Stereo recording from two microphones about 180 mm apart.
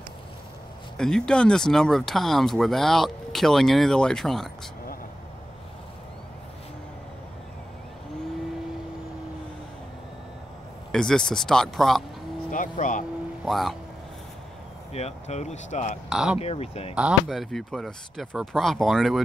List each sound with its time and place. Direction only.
0.9 s speech: 5° left (ahead or behind)
10.9 s speech: 5° left (ahead or behind)
12.4 s speech: 45° left (ahead or behind)
13.5 s speech: centre (ahead or behind)
14.9 s speech: 35° left (ahead or behind)
16.1 s speech: 5° right (ahead or behind)
16.3 s speech: 35° left (ahead or behind)
16.9 s speech: 5° right (ahead or behind)